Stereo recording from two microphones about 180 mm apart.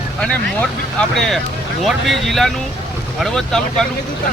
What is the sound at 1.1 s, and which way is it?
Speech, centre (ahead or behind).